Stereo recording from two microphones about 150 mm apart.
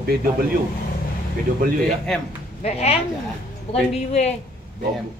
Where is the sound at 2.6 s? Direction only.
45° left (ahead or behind).